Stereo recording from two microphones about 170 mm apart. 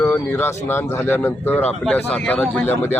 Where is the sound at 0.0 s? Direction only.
15° left (ahead or behind).